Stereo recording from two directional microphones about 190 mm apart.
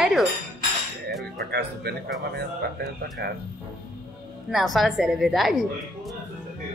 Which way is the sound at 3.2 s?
60° right (ahead or behind).